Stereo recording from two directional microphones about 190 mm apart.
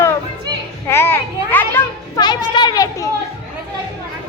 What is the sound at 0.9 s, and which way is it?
Children playing, 15° left (ahead or behind).